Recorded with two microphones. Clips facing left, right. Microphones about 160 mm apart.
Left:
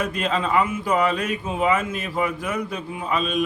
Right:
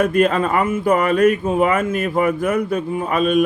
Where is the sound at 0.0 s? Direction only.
55° right (ahead or behind).